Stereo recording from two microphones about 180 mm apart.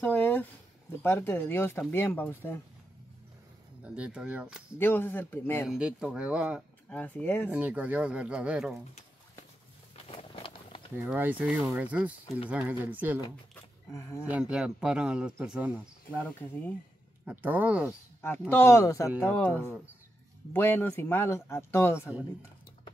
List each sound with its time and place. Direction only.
0.0 s a sound: 10° left (ahead or behind)
1.0 s speech: 15° left (ahead or behind)
3.8 s speech: 5° right (ahead or behind)
4.7 s speech: 10° left (ahead or behind)
5.7 s speech: 5° right (ahead or behind)
6.9 s speech: 10° left (ahead or behind)
7.5 s speech: 10° right (ahead or behind)
10.0 s a sound: 30° left (ahead or behind)
11.0 s speech: 10° right (ahead or behind)
14.3 s speech: 5° right (ahead or behind)
16.1 s speech: 10° left (ahead or behind)
17.3 s speech: 10° right (ahead or behind)
18.5 s speech: 15° left (ahead or behind)